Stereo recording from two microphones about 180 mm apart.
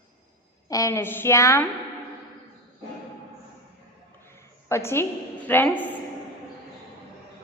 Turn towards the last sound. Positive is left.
turn(degrees=10)  # may be behind; listen again after turning